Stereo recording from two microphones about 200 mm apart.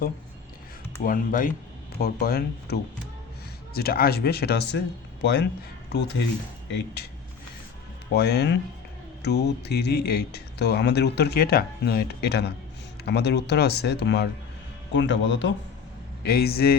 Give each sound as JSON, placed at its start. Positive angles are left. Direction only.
{"t": 1.0, "sound": "speech", "side_deg": 45}
{"t": 3.8, "sound": "speech", "side_deg": 50}
{"t": 8.1, "sound": "speech", "side_deg": 55}
{"t": 16.2, "sound": "speech", "side_deg": 50}